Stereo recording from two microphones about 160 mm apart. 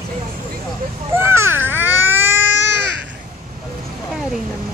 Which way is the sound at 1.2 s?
15° right (ahead or behind).